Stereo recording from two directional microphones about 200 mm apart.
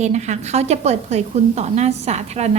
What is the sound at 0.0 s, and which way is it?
A woman's voice, 35° right (ahead or behind).